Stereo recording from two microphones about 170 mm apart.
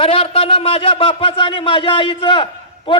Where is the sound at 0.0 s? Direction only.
35° left (ahead or behind).